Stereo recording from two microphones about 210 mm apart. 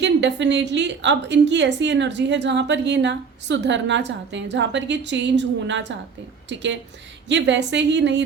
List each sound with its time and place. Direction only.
0.0 s a woman's voice: 55° right (ahead or behind)